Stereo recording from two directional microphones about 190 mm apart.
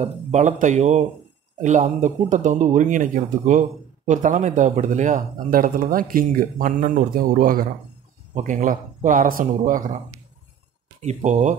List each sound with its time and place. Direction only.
0.0 s speech: 40° right (ahead or behind)
11.0 s speech: 35° right (ahead or behind)